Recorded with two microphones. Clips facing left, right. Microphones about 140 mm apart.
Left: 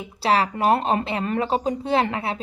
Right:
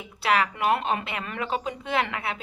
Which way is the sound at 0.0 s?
30° left (ahead or behind).